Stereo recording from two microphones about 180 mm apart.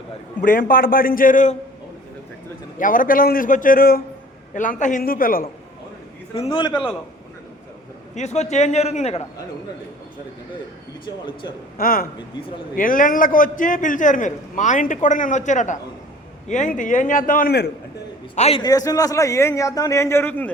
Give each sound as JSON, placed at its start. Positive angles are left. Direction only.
{"t": 0.4, "sound": "a man's voice", "side_deg": 50}
{"t": 2.7, "sound": "a man's voice", "side_deg": 50}
{"t": 6.3, "sound": "a man's voice", "side_deg": 30}
{"t": 8.1, "sound": "a man's voice", "side_deg": 40}
{"t": 11.8, "sound": "a man's voice", "side_deg": 55}
{"t": 18.3, "sound": "a man's voice", "side_deg": 35}
{"t": 18.6, "sound": "a man's voice", "side_deg": 20}